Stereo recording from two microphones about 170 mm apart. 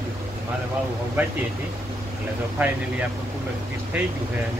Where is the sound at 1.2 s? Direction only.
10° right (ahead or behind).